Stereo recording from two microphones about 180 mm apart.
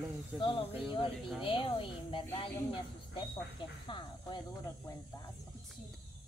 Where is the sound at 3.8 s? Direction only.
25° left (ahead or behind).